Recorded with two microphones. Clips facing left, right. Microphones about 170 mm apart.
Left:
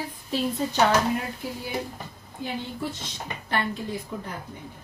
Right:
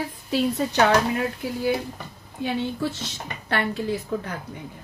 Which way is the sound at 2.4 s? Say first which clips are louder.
Right 6 dB; 80° right.